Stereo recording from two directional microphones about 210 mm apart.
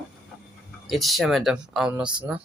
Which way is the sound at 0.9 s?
Centre (ahead or behind).